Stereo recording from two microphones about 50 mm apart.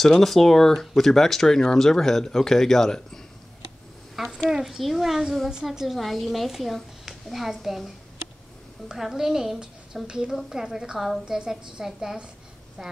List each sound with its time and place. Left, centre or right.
0.0 s speech: centre
4.2 s a woman's voice: centre